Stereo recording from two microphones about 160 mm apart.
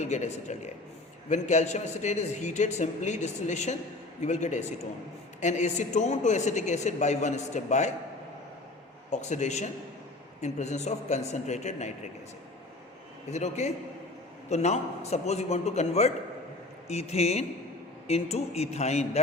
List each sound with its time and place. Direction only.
0.0 s a man's voice: 45° left (ahead or behind)
9.0 s a man's voice: 45° left (ahead or behind)
13.3 s a man's voice: 45° left (ahead or behind)